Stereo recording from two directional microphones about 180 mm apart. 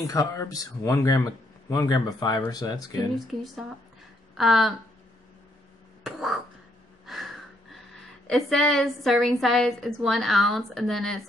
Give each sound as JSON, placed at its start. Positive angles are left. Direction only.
{"t": 0.0, "sound": "speech", "side_deg": 20}
{"t": 4.4, "sound": "a woman's voice", "side_deg": 0}
{"t": 6.0, "sound": "a sound", "side_deg": 0}
{"t": 7.1, "sound": "gasp", "side_deg": 0}
{"t": 8.3, "sound": "a woman's voice", "side_deg": 0}